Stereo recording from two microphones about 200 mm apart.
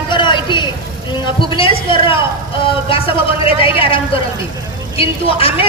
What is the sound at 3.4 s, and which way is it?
A woman's voice, 25° left (ahead or behind).